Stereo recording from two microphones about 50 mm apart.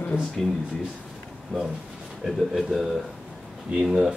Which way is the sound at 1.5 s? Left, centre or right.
Centre.